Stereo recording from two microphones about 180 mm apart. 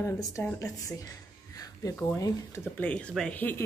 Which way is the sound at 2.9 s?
5° left (ahead or behind).